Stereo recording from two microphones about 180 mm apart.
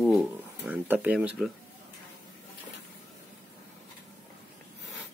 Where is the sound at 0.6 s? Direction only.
10° right (ahead or behind).